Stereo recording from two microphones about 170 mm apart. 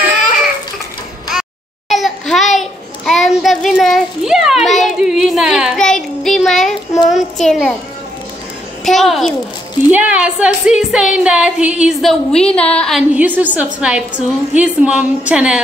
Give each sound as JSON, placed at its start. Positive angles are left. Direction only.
{"t": 1.9, "sound": "a sound", "side_deg": 0}
{"t": 2.5, "sound": "child singing", "side_deg": 0}
{"t": 7.1, "sound": "a child's voice", "side_deg": 0}
{"t": 8.8, "sound": "speech", "side_deg": 0}
{"t": 13.1, "sound": "a woman's voice", "side_deg": -10}